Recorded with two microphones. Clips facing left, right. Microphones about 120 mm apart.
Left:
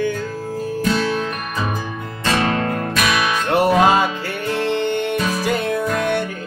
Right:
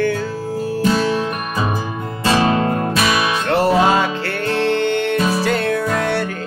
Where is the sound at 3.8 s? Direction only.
15° left (ahead or behind).